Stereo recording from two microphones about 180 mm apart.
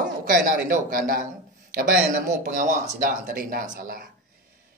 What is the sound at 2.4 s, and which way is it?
Speech, 45° right (ahead or behind).